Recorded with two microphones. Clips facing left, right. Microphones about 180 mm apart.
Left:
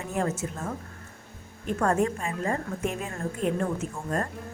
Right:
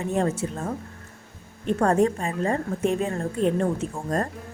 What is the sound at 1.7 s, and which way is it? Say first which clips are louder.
A woman's voice: right 4 dB; 35° right (ahead or behind).